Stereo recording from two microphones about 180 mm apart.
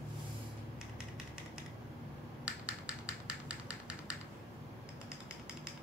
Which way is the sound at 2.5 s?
5° right (ahead or behind).